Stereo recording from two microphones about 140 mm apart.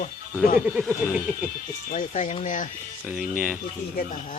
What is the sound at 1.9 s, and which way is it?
Speech, 60° left (ahead or behind).